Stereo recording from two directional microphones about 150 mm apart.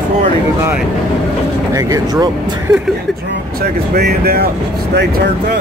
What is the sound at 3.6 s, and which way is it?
Speech, 90° right.